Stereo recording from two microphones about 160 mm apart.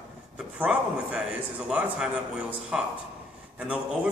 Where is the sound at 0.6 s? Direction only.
5° right (ahead or behind).